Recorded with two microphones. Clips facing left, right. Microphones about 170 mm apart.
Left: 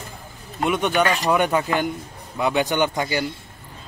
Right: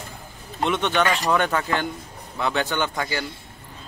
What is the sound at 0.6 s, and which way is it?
Speech, 10° left (ahead or behind).